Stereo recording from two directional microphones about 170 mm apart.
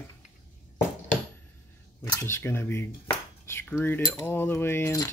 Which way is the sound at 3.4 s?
15° left (ahead or behind).